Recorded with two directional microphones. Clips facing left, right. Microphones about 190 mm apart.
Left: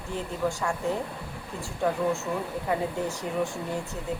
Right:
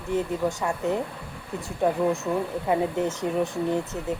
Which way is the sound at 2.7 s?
20° right (ahead or behind).